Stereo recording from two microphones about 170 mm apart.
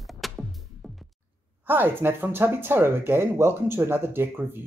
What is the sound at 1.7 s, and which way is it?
Speech, 10° right (ahead or behind).